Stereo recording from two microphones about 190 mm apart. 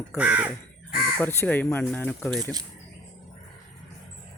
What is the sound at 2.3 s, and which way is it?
Speech, 20° right (ahead or behind).